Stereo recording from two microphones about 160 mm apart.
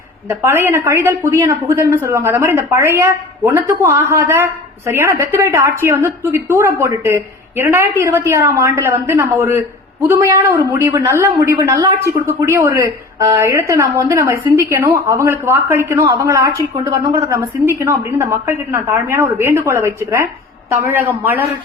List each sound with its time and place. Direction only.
0.3 s speech: 15° right (ahead or behind)